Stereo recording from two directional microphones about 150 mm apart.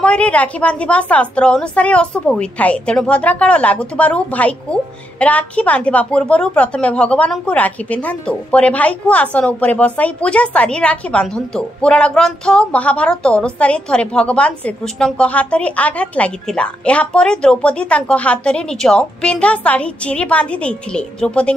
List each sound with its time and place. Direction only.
0.0 s a woman's voice: 5° left (ahead or behind)